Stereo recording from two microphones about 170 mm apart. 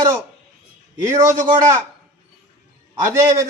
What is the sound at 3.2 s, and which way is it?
Speech, 20° right (ahead or behind).